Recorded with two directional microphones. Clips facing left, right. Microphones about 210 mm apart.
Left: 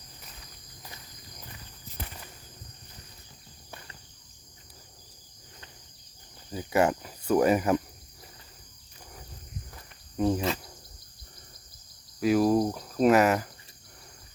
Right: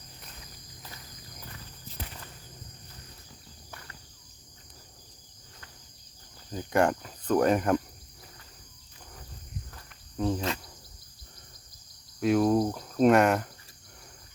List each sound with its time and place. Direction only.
3.7 s insect: 20° left (ahead or behind)
6.5 s speech: 5° left (ahead or behind)
10.2 s cricket: 15° left (ahead or behind)
12.2 s cricket: 5° left (ahead or behind)